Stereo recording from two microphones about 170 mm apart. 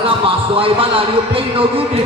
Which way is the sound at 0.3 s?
30° right (ahead or behind).